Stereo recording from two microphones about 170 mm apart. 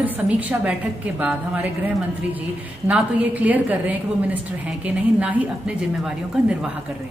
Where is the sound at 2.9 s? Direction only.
10° right (ahead or behind).